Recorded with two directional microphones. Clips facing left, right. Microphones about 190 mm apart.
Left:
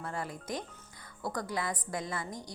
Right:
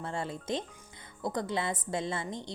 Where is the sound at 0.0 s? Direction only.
25° right (ahead or behind).